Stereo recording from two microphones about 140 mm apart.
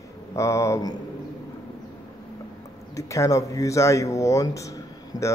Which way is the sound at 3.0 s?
20° left (ahead or behind).